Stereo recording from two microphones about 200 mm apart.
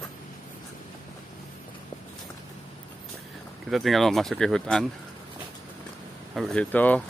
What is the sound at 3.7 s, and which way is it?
Speech, centre (ahead or behind).